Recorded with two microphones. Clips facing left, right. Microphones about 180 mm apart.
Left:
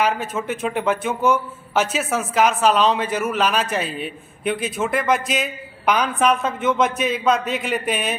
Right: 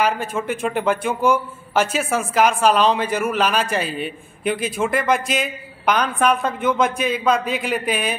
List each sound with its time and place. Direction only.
0.0 s a man's voice: 5° left (ahead or behind)